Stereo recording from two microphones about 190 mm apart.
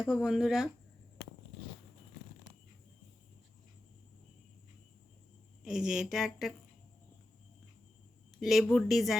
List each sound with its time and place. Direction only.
0.0 s speech: centre (ahead or behind)
5.6 s speech: 5° right (ahead or behind)
8.4 s speech: centre (ahead or behind)